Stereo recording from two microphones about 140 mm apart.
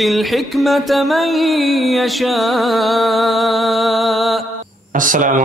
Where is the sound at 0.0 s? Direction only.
Centre (ahead or behind).